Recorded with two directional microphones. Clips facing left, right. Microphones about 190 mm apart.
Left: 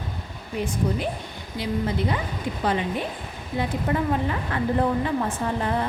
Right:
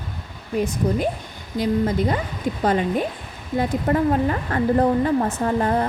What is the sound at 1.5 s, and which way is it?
Speech, 45° right (ahead or behind).